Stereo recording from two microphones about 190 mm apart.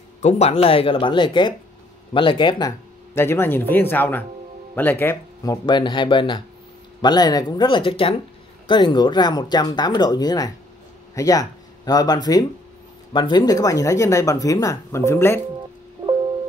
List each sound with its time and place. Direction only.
0.2 s speech: 35° left (ahead or behind)
3.2 s speech: 10° left (ahead or behind)